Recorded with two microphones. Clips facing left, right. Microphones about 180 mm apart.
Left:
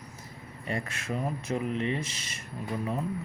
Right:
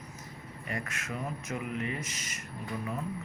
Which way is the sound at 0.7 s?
30° left (ahead or behind).